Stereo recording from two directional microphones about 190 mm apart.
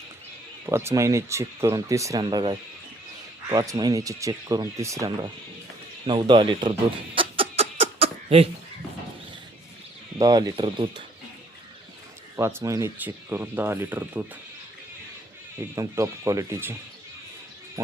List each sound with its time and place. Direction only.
0.6 s speech: 15° right (ahead or behind)
6.1 s a sound: 25° right (ahead or behind)
10.2 s speech: 20° right (ahead or behind)
12.4 s speech: 15° right (ahead or behind)
15.7 s speech: 15° right (ahead or behind)
17.8 s speech: 15° right (ahead or behind)